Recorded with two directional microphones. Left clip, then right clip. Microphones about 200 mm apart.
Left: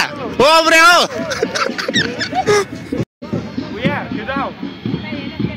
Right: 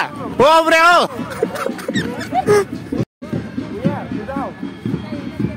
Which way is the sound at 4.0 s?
40° left (ahead or behind).